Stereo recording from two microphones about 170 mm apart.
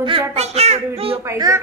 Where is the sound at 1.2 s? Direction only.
15° right (ahead or behind).